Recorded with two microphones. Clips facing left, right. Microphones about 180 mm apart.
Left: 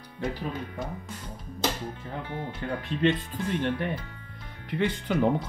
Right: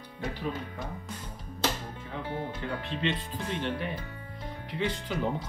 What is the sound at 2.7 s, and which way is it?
Speech, 50° left (ahead or behind).